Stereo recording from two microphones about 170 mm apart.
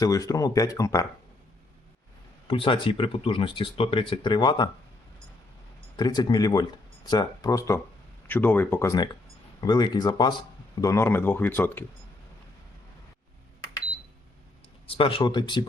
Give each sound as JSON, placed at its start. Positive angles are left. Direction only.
{"t": 0.0, "sound": "speech", "side_deg": 20}
{"t": 2.5, "sound": "speech", "side_deg": 30}
{"t": 6.0, "sound": "speech", "side_deg": 25}
{"t": 14.8, "sound": "speech", "side_deg": 30}